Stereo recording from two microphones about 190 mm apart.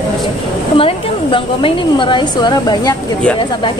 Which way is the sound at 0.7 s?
25° left (ahead or behind).